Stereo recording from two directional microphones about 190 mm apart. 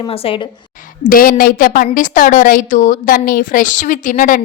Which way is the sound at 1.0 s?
45° left (ahead or behind).